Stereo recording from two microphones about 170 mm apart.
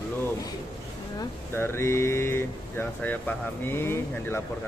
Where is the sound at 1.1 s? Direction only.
15° left (ahead or behind).